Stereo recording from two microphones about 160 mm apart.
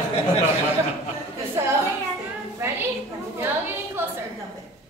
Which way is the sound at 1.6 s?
15° right (ahead or behind).